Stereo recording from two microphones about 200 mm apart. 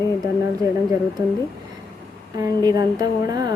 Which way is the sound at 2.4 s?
20° right (ahead or behind).